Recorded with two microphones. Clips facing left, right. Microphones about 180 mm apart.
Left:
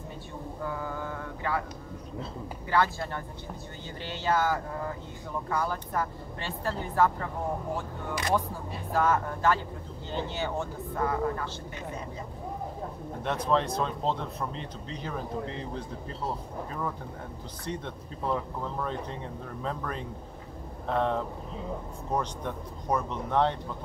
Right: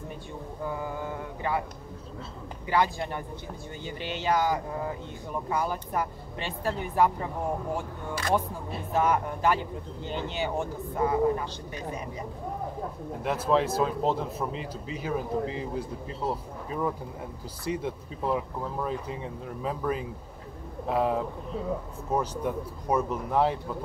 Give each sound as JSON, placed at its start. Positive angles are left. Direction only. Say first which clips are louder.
{"t": 0.7, "sound": "mantra", "louder": "right 2 dB", "side_deg": -20}
{"t": 2.7, "sound": "speech", "louder": "right 1 dB", "side_deg": -15}
{"t": 8.9, "sound": "speech", "louder": "right 1 dB", "side_deg": -15}
{"t": 13.2, "sound": "speech", "louder": "right 2 dB", "side_deg": -5}